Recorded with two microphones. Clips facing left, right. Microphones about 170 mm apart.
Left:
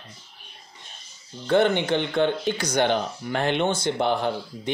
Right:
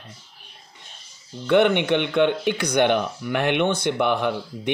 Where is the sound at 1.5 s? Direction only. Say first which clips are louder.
Right 2 dB; 65° right (ahead or behind).